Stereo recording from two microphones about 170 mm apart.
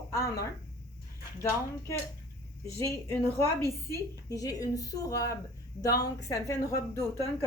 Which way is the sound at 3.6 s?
15° left (ahead or behind).